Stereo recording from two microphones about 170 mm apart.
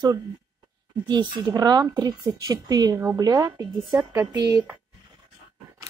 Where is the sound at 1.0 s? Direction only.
25° right (ahead or behind).